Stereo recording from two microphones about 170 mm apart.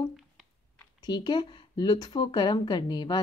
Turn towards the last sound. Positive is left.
turn(degrees=25)  # may be behind; listen again after turning